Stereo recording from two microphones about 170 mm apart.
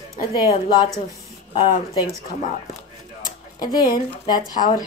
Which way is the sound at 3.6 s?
25° left (ahead or behind).